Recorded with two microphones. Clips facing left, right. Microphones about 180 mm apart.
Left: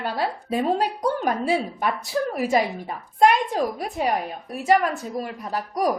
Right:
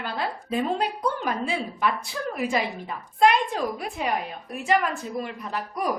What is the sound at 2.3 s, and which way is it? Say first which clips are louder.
A woman's voice: left 2 dB; 45° left (ahead or behind).